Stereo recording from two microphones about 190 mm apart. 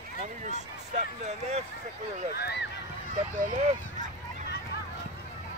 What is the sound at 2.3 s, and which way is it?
Speech, 60° left (ahead or behind).